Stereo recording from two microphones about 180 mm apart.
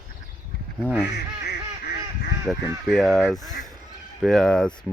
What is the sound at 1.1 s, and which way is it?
Duck, 60° left (ahead or behind).